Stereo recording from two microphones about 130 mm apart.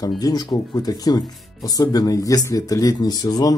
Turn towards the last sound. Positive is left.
turn(degrees=30)  # may be behind; listen again after turning